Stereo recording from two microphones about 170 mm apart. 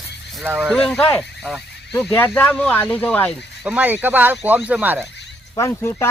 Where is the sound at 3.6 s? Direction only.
10° right (ahead or behind).